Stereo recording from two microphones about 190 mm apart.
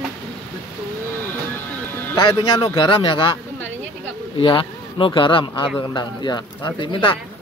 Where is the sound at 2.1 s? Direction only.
25° left (ahead or behind).